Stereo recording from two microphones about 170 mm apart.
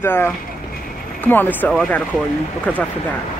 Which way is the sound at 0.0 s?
15° left (ahead or behind).